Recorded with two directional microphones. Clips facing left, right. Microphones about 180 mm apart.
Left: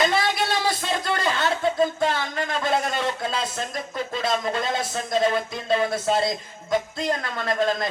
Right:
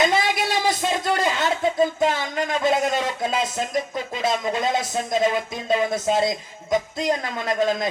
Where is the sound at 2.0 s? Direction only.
20° right (ahead or behind).